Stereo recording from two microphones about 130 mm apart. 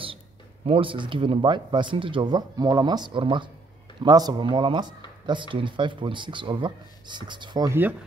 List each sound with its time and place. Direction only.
0.7 s speech: 40° right (ahead or behind)